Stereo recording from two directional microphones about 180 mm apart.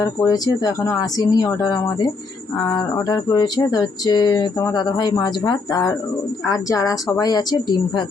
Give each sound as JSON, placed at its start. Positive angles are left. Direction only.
{"t": 0.0, "sound": "speech", "side_deg": 20}